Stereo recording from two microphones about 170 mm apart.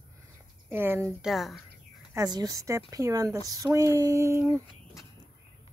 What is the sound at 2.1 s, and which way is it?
A woman's voice, 20° right (ahead or behind).